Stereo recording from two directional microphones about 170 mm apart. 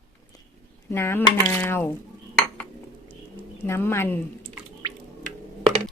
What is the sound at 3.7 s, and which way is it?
Speech, 15° left (ahead or behind).